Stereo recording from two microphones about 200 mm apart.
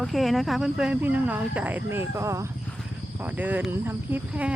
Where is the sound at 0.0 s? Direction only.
Centre (ahead or behind).